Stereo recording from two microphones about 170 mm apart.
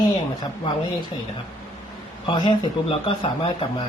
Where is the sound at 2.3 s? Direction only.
25° left (ahead or behind).